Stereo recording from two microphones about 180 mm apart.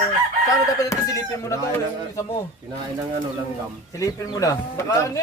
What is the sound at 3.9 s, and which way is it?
Speech, 20° left (ahead or behind).